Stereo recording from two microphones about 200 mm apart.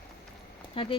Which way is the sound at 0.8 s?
25° left (ahead or behind).